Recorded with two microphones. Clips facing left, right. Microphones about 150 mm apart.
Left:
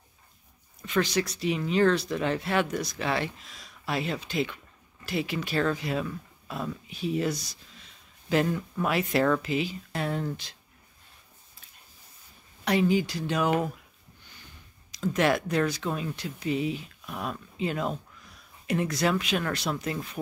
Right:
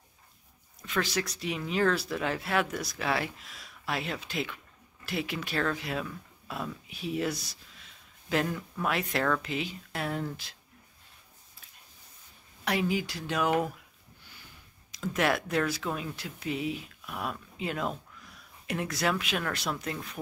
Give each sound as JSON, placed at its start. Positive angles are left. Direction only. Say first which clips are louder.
{"t": 0.8, "sound": "speech", "louder": "left 4 dB", "side_deg": 0}
{"t": 12.6, "sound": "speech", "louder": "left 5 dB", "side_deg": 0}
{"t": 14.9, "sound": "speech", "louder": "left 3 dB", "side_deg": 0}